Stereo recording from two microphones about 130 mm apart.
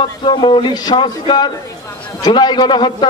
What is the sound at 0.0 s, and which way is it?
A man's voice, 40° left (ahead or behind).